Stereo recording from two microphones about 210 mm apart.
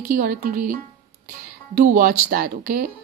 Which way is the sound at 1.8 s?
45° right (ahead or behind).